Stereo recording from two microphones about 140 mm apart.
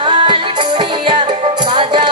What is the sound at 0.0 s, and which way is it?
Music, 35° right (ahead or behind).